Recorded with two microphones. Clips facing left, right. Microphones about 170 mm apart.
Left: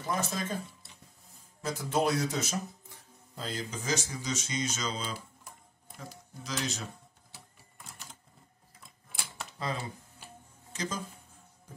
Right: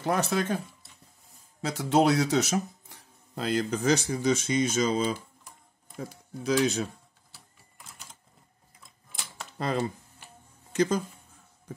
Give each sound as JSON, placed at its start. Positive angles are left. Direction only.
{"t": 0.0, "sound": "speech", "side_deg": -70}
{"t": 1.6, "sound": "speech", "side_deg": -75}
{"t": 9.6, "sound": "speech", "side_deg": -60}
{"t": 10.7, "sound": "a sound", "side_deg": -60}